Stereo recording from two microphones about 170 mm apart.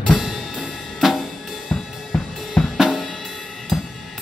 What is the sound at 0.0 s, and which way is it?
Drum kit, centre (ahead or behind).